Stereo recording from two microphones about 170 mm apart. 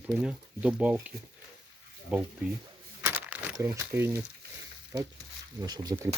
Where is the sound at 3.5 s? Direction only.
20° right (ahead or behind).